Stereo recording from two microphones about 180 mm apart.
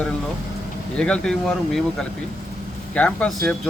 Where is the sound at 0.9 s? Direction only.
5° left (ahead or behind).